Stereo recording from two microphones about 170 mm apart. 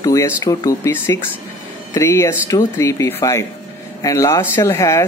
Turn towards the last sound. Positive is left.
turn(degrees=15)  # may be behind; listen again after turning